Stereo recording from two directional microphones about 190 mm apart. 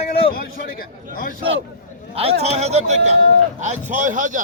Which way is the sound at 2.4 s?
35° right (ahead or behind).